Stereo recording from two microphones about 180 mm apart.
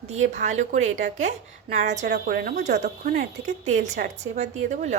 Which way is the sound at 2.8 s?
45° right (ahead or behind).